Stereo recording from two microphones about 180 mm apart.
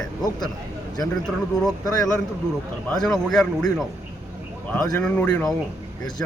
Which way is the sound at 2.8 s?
5° left (ahead or behind).